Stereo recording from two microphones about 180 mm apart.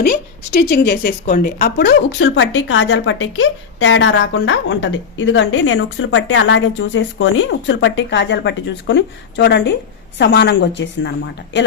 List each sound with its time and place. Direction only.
0.0 s a woman's voice: 60° left (ahead or behind)
1.2 s a woman's voice: 50° left (ahead or behind); by 11.1 s 75° left (ahead or behind)